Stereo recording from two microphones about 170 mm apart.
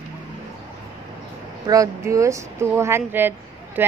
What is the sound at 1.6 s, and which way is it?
Speech, 20° right (ahead or behind).